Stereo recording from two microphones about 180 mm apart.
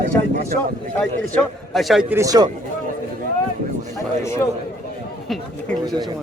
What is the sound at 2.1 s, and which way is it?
Speech, 20° right (ahead or behind).